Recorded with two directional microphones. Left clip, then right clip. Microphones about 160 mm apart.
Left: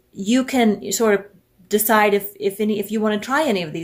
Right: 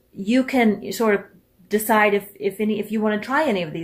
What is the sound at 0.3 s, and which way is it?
A woman's voice, 30° left (ahead or behind).